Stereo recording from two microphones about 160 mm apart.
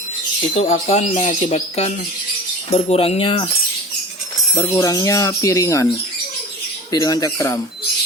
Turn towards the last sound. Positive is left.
turn(degrees=20)  # may be behind; listen again after turning